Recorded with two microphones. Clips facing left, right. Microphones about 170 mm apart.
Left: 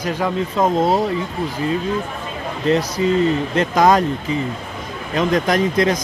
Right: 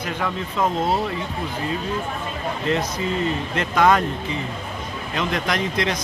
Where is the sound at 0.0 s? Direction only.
40° left (ahead or behind).